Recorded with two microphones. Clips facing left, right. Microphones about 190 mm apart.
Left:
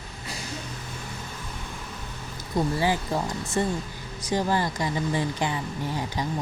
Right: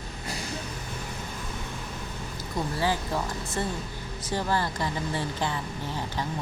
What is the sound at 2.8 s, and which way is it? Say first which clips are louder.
Speech: left 2 dB; 15° left (ahead or behind).